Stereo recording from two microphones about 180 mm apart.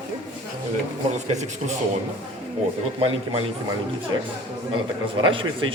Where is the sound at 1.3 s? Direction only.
40° right (ahead or behind).